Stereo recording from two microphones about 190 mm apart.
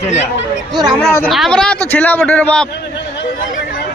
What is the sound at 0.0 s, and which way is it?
Speech, 35° left (ahead or behind).